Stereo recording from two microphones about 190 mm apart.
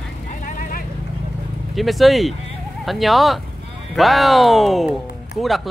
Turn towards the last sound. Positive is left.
turn(degrees=0)  # may be behind; listen again after turning